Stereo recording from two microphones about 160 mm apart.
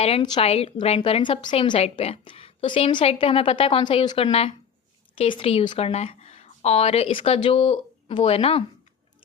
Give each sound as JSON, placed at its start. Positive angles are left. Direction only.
{"t": 0.0, "sound": "a woman's voice", "side_deg": 40}